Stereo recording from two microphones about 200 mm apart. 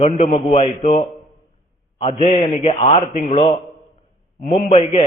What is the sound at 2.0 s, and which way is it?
A man's voice, 30° left (ahead or behind).